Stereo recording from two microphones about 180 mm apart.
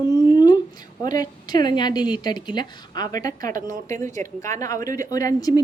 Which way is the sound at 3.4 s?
45° right (ahead or behind).